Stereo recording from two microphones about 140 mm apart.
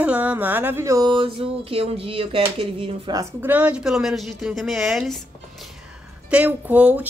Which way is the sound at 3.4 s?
10° right (ahead or behind).